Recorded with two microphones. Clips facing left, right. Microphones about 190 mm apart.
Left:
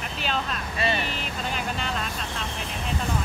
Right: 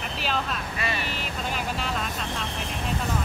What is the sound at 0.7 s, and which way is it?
Speech, 30° left (ahead or behind).